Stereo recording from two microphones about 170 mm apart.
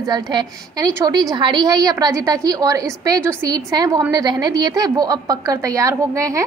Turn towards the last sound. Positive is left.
turn(degrees=-20)  # may be behind; listen again after turning